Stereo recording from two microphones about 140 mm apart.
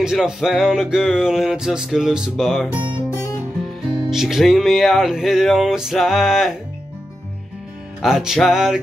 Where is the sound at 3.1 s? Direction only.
20° left (ahead or behind).